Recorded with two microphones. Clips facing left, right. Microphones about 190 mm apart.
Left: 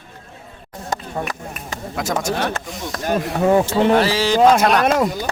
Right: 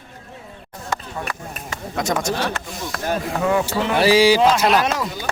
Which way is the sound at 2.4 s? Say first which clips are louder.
Left 1 dB; 45° left (ahead or behind).